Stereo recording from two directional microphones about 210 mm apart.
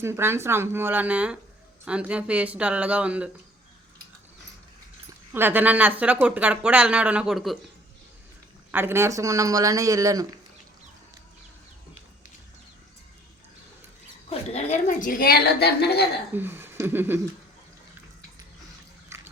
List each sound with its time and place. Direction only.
0.0 s speech: 10° right (ahead or behind)
5.3 s speech: 10° right (ahead or behind)
8.7 s speech: 10° right (ahead or behind)
14.3 s a woman's voice: 30° left (ahead or behind); by 16.0 s 50° left (ahead or behind)
16.3 s speech: 10° right (ahead or behind)
19.0 s biting: 10° right (ahead or behind)